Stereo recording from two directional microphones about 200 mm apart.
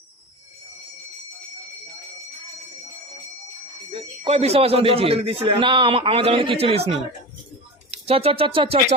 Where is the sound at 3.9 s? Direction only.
30° right (ahead or behind).